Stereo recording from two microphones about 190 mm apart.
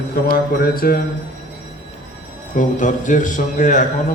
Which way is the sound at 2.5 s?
40° left (ahead or behind).